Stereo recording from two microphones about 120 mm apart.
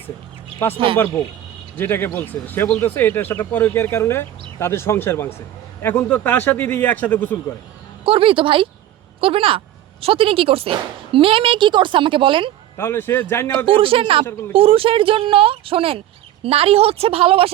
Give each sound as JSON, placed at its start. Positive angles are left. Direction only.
{"t": 0.9, "sound": "speech", "side_deg": 25}
{"t": 8.0, "sound": "speech", "side_deg": -50}
{"t": 12.7, "sound": "speech", "side_deg": 20}
{"t": 13.7, "sound": "a woman's voice", "side_deg": -50}